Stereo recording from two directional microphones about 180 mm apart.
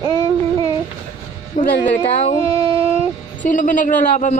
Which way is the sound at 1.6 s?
40° left (ahead or behind).